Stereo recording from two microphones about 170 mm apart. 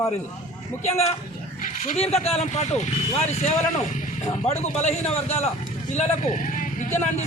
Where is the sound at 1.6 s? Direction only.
45° left (ahead or behind).